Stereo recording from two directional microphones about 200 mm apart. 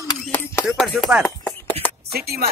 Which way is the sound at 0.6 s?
Centre (ahead or behind).